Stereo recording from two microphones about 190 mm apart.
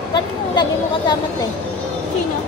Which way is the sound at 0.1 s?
25° left (ahead or behind).